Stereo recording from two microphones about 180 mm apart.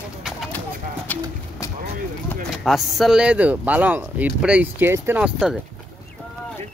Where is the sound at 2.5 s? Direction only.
Centre (ahead or behind).